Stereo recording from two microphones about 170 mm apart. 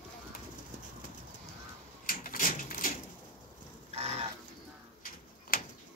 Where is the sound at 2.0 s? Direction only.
55° left (ahead or behind).